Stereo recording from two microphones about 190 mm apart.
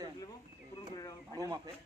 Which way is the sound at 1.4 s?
15° right (ahead or behind).